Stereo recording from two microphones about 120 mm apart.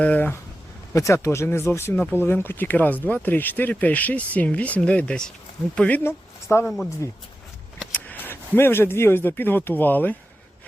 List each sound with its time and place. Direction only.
0.0 s speech: 15° left (ahead or behind)
0.9 s speech: 25° left (ahead or behind)
7.9 s speech: 15° left (ahead or behind)